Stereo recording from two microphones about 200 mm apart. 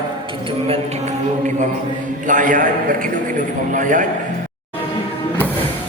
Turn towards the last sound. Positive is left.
turn(degrees=-40)  # may be behind; listen again after turning